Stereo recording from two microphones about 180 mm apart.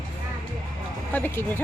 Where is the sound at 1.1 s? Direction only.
10° left (ahead or behind).